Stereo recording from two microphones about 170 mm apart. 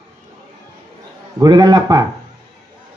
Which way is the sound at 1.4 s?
25° right (ahead or behind).